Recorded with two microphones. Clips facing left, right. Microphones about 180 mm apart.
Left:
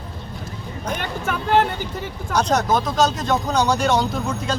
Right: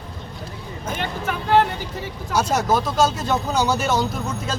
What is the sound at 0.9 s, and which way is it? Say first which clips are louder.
Speech: right 1 dB; 50° left (ahead or behind).